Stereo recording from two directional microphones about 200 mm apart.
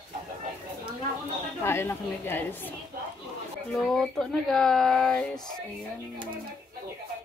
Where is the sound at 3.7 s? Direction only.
Centre (ahead or behind).